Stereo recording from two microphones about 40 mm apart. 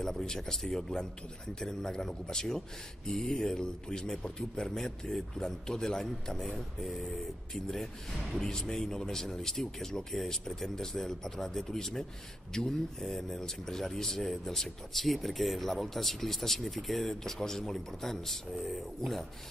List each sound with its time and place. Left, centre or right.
0.0 s speech: centre
13.0 s speech: centre